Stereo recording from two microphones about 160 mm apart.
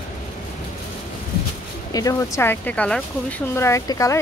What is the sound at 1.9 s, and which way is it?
A woman's voice, 20° left (ahead or behind).